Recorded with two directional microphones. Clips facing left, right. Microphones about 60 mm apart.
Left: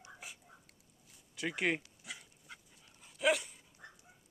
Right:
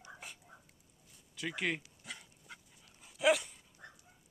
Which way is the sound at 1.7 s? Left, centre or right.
Left.